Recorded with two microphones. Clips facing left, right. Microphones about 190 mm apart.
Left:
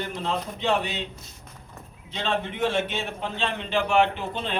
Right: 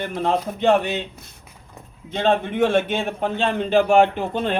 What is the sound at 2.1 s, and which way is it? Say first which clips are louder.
A man's voice: right 9 dB; 50° right (ahead or behind).